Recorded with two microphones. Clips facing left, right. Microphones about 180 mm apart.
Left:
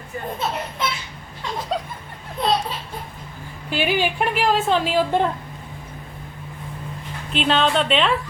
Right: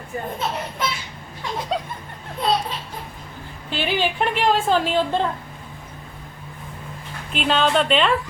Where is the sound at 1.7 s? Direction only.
Centre (ahead or behind).